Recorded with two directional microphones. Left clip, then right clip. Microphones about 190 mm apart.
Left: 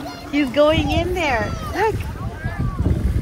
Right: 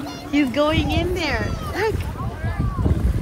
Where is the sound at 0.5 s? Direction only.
Centre (ahead or behind).